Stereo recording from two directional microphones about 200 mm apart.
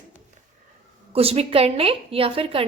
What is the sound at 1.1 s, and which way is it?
A woman's voice, 30° right (ahead or behind).